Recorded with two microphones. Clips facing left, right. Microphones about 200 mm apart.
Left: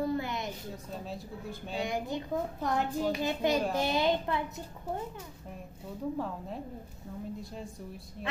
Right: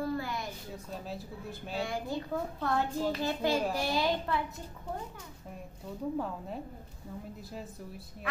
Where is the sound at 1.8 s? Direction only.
20° left (ahead or behind).